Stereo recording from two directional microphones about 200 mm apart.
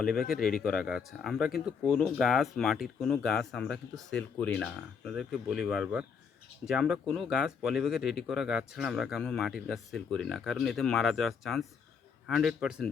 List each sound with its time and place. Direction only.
0.3 s speech: 45° left (ahead or behind)
0.6 s speech: centre (ahead or behind)